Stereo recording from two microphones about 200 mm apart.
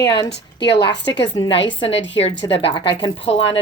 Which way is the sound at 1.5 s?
65° left (ahead or behind).